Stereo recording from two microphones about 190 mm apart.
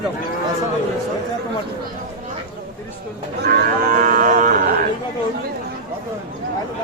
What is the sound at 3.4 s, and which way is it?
Cattle, 50° right (ahead or behind).